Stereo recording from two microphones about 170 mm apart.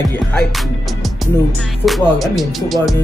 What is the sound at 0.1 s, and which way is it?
Speech, 5° left (ahead or behind).